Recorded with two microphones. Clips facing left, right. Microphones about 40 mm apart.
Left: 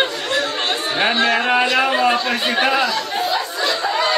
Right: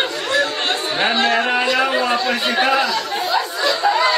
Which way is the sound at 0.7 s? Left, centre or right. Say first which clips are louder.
Left 1 dB; centre.